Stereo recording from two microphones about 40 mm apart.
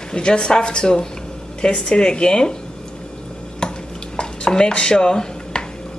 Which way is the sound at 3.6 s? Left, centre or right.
Centre.